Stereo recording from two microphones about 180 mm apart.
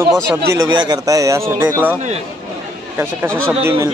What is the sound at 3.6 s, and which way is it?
Speech, 15° right (ahead or behind).